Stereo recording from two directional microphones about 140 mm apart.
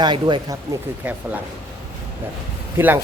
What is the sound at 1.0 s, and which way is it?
Speech, 10° right (ahead or behind).